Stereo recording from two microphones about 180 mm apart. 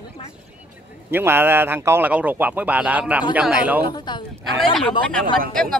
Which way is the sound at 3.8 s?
25° left (ahead or behind).